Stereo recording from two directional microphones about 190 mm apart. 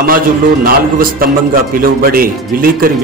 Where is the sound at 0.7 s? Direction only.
50° right (ahead or behind).